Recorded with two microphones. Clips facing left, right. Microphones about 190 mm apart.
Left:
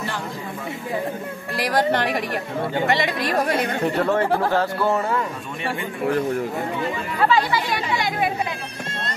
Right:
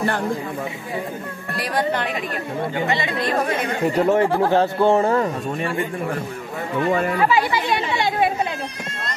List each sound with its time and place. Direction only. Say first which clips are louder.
3.8 s speech: right 5 dB; 20° right (ahead or behind)
5.2 s speech: right 5 dB; 45° right (ahead or behind)
7.2 s chatter: right 1 dB; 15° right (ahead or behind)